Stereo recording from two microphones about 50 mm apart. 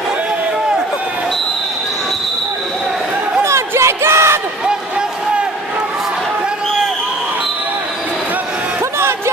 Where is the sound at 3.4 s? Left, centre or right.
Right.